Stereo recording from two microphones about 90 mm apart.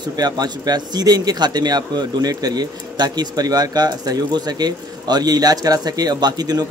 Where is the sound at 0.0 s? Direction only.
50° right (ahead or behind).